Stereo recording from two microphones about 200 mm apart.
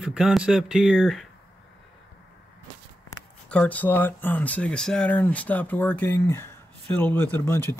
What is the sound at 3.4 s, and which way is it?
Speech, 5° left (ahead or behind).